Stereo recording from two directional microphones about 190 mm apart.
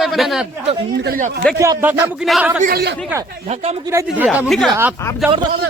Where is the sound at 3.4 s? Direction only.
35° right (ahead or behind).